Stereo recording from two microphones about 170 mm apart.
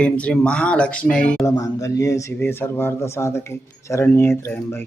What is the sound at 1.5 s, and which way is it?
Speech, 20° left (ahead or behind).